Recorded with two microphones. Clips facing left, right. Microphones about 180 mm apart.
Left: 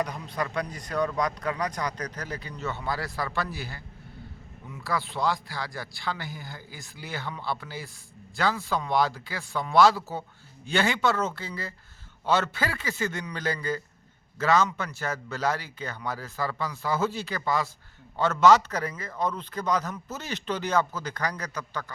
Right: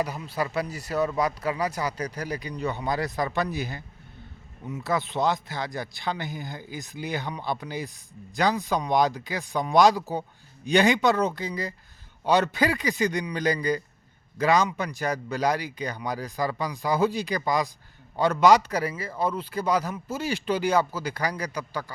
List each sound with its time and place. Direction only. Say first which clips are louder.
0.0 s a man's voice: right 2 dB; 5° right (ahead or behind)